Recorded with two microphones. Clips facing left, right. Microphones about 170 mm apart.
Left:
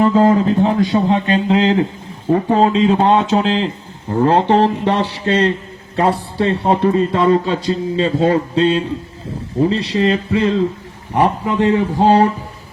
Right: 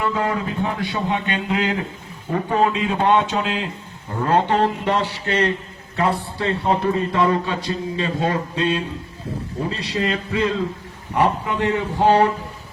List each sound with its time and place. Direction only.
0.0 s speech: 35° left (ahead or behind)